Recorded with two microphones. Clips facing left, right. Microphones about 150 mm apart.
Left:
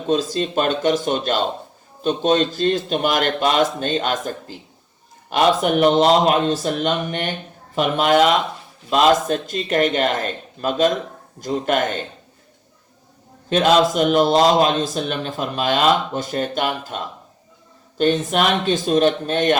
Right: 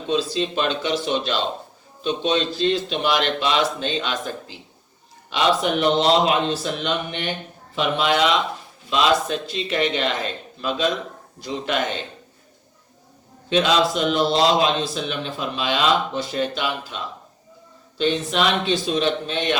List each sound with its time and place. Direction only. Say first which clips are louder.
0.1 s a man's voice: left 3 dB; 45° left (ahead or behind)
13.5 s a man's voice: left 3 dB; 45° left (ahead or behind)